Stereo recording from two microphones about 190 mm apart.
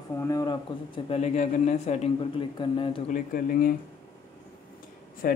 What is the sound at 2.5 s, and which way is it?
Speech, 25° left (ahead or behind).